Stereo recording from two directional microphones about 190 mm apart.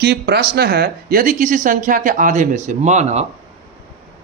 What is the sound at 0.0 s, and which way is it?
Speech, 55° right (ahead or behind).